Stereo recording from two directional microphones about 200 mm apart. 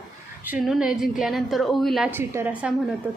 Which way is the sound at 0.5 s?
Centre (ahead or behind).